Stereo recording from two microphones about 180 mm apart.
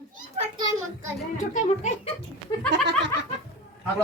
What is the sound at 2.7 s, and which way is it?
Snicker, 70° right (ahead or behind).